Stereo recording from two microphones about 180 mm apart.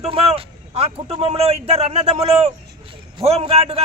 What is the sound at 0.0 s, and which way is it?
A man's voice, 35° right (ahead or behind).